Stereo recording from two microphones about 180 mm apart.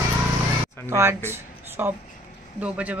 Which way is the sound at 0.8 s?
15° right (ahead or behind).